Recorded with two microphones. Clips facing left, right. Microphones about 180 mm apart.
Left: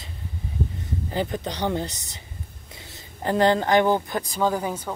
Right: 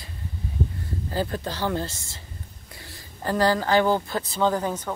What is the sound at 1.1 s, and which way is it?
Speech, 20° left (ahead or behind).